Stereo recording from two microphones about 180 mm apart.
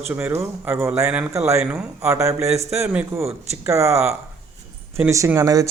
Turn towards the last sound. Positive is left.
turn(degrees=-20)  # may be behind; listen again after turning